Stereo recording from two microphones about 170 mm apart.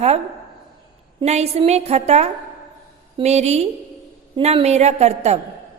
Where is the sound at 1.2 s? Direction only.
40° right (ahead or behind).